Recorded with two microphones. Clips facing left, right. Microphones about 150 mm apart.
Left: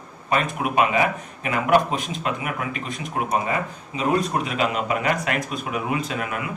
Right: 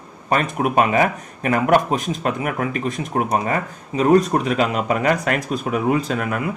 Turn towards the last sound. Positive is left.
turn(degrees=-40)  # may be behind; listen again after turning